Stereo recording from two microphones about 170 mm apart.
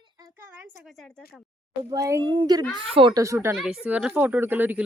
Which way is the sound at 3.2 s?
15° right (ahead or behind).